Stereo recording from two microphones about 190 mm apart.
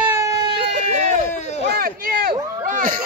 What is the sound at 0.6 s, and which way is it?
Run, 40° right (ahead or behind).